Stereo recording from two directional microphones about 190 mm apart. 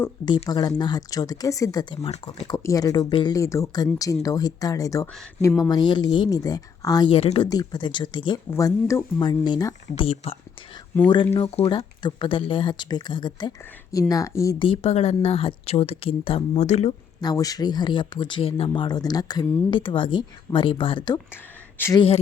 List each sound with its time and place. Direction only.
0.4 s speech: 20° left (ahead or behind)
2.5 s speech: 20° left (ahead or behind)
9.9 s speech: 30° left (ahead or behind)
11.3 s speech: 30° left (ahead or behind)
14.6 s speech: 30° left (ahead or behind)
17.2 s speech: 20° left (ahead or behind)
21.8 s speech: 15° left (ahead or behind)